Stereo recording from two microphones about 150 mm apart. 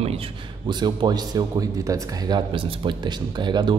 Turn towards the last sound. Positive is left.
turn(degrees=-30)  # may be behind; listen again after turning